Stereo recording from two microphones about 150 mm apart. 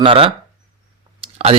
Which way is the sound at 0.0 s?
35° right (ahead or behind).